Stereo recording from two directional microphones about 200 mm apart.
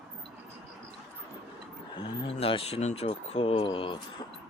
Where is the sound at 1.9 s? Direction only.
30° left (ahead or behind).